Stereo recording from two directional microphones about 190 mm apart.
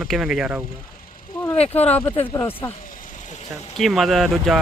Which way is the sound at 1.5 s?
35° left (ahead or behind).